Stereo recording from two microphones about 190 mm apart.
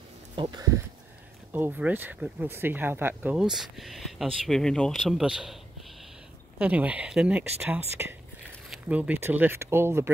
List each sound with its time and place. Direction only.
0.4 s speech: 25° right (ahead or behind)
1.5 s speech: 10° right (ahead or behind)